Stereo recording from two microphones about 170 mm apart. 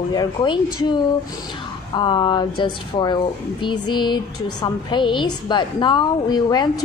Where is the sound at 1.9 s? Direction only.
25° left (ahead or behind).